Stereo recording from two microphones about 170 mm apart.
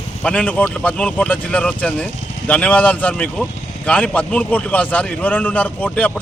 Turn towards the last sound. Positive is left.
turn(degrees=10)  # may be behind; listen again after turning